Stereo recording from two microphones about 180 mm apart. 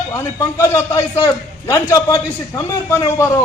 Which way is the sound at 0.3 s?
15° left (ahead or behind).